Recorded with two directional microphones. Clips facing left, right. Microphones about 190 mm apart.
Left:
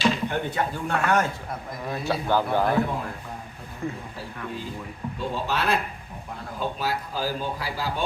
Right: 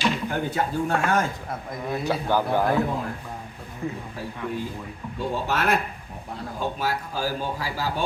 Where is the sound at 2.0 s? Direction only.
15° right (ahead or behind).